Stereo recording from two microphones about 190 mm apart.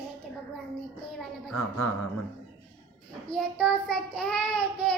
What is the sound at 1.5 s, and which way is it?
Speech, 90° left.